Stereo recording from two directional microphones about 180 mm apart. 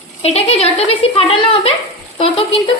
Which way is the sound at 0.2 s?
35° left (ahead or behind).